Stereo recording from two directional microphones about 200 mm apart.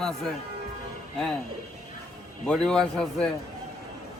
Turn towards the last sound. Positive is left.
turn(degrees=5)  # may be behind; listen again after turning